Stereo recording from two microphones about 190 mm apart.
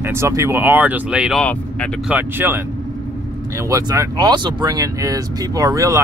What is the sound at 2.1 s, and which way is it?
Speech, 10° right (ahead or behind).